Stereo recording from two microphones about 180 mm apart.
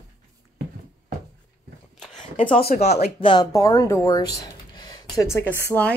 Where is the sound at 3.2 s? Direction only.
25° left (ahead or behind).